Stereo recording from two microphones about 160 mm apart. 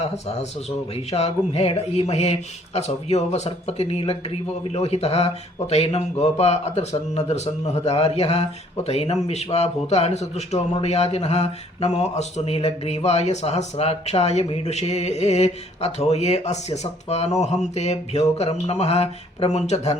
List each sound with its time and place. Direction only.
0.0 s speech: 40° left (ahead or behind)